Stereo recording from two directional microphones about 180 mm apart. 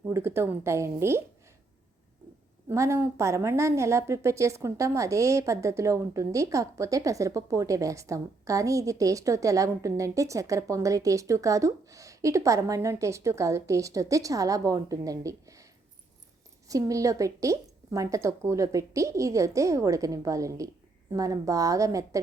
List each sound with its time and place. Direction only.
0.1 s a woman's voice: 15° right (ahead or behind)
2.6 s a woman's voice: 15° right (ahead or behind)
16.6 s a woman's voice: 20° right (ahead or behind)